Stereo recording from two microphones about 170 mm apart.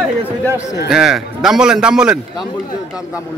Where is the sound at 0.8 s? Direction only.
Centre (ahead or behind).